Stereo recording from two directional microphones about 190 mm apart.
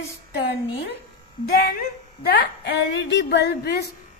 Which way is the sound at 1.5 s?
55° left (ahead or behind).